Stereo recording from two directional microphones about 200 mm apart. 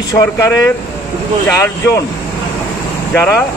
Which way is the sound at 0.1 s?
15° left (ahead or behind).